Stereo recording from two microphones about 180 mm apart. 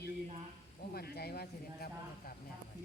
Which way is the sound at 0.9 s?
60° left (ahead or behind).